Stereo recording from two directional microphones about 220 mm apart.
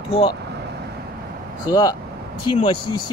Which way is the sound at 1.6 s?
15° left (ahead or behind).